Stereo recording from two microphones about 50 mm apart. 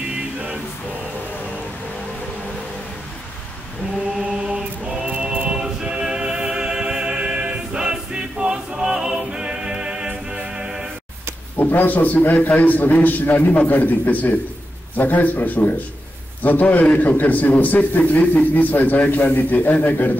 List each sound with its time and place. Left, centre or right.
4.2 s mantra: centre
5.3 s choir: right
5.6 s choir: centre
11.5 s a man's voice: left